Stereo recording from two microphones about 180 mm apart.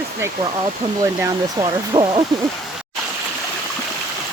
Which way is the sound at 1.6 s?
25° right (ahead or behind).